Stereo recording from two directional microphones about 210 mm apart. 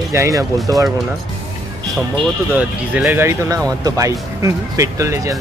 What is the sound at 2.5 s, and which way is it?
Speech, 5° right (ahead or behind).